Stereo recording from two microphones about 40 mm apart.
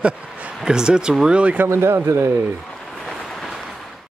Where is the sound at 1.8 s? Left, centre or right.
Right.